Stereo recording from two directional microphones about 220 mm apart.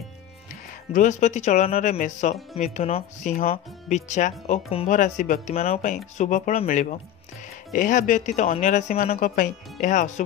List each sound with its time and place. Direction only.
0.9 s speech: 35° left (ahead or behind)